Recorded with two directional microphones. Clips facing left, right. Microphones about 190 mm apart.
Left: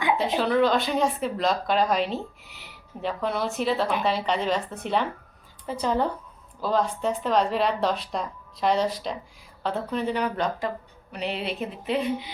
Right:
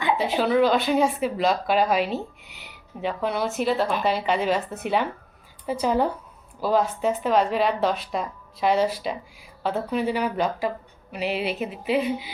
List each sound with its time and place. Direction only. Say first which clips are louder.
0.2 s speech: right 3 dB; 5° right (ahead or behind)